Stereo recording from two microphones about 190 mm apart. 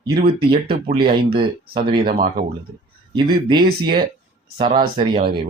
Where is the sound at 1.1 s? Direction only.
55° right (ahead or behind).